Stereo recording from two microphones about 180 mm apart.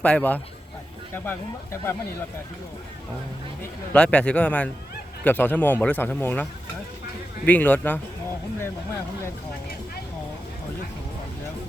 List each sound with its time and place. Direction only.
0.0 s a man's voice: 10° left (ahead or behind)
3.9 s a man's voice: 5° left (ahead or behind)